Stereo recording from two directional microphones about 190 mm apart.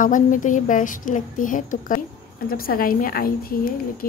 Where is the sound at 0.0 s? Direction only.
45° left (ahead or behind).